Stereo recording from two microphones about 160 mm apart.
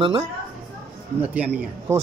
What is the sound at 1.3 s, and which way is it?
Speech, 10° right (ahead or behind).